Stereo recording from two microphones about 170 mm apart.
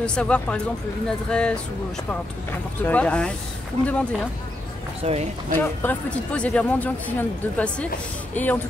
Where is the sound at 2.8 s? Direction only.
10° left (ahead or behind).